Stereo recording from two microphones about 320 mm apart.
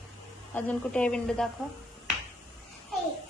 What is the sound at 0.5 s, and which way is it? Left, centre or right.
Speech, centre.